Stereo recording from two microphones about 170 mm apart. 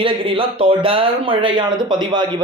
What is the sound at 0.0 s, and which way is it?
Speech, 30° right (ahead or behind).